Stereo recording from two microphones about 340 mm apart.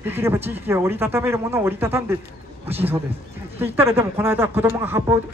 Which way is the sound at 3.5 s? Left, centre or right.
Centre.